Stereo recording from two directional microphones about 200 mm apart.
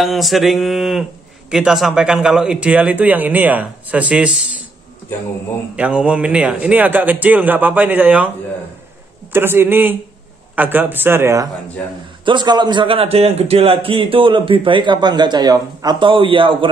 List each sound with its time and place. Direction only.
0.0 s a man's voice: centre (ahead or behind)
5.8 s speech: 5° right (ahead or behind)
9.3 s speech: 10° right (ahead or behind)
12.3 s a man's voice: 20° right (ahead or behind)